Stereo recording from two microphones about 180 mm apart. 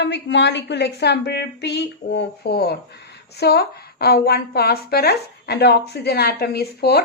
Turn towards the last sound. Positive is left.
turn(degrees=60)  # may be behind; listen again after turning